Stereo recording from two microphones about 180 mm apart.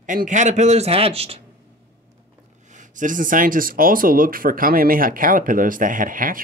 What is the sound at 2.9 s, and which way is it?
Speech, 45° right (ahead or behind).